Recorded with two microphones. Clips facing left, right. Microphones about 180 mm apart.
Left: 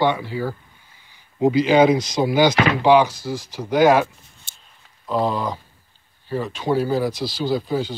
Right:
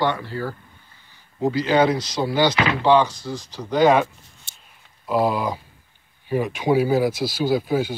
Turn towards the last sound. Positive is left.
turn(degrees=-10)  # may be behind; listen again after turning